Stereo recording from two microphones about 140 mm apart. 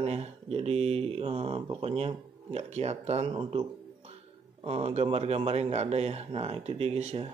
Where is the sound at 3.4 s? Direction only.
35° right (ahead or behind).